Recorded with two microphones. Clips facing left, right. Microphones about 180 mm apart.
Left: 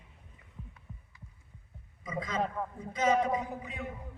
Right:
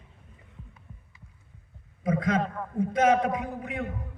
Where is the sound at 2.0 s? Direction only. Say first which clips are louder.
Right 11 dB; 60° right (ahead or behind).